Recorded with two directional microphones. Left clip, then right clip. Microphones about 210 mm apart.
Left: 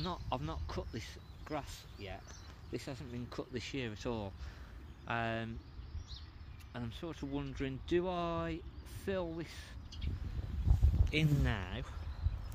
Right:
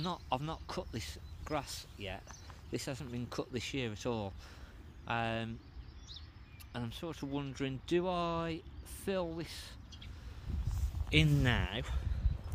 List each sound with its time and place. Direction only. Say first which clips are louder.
0.0 s speech: right 3 dB; 25° right (ahead or behind)
6.7 s speech: right 2 dB; 30° right (ahead or behind)
11.1 s speech: right 5 dB; 55° right (ahead or behind)